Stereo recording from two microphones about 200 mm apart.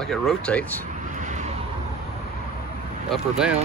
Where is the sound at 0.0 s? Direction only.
Centre (ahead or behind).